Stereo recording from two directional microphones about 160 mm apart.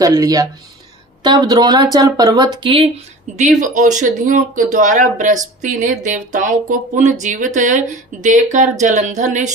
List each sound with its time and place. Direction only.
0.0 s speech: 20° right (ahead or behind)
3.3 s speech: 50° right (ahead or behind)